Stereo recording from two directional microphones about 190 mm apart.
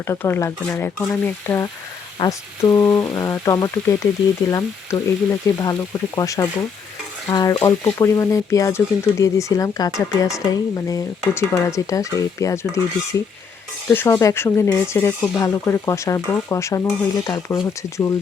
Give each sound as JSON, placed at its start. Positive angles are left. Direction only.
{"t": 0.1, "sound": "speech", "side_deg": 15}
{"t": 13.8, "sound": "speech", "side_deg": 10}